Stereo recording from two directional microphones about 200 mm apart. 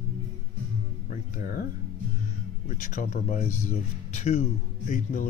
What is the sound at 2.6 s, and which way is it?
Speech, 40° left (ahead or behind).